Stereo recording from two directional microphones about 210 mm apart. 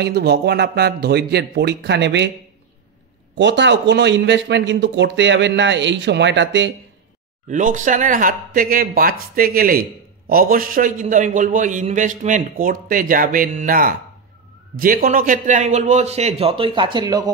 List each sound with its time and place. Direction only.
0.0 s speech: 50° right (ahead or behind)
3.3 s a man's voice: 60° right (ahead or behind)
7.4 s speech: 35° right (ahead or behind); by 17.3 s 20° right (ahead or behind)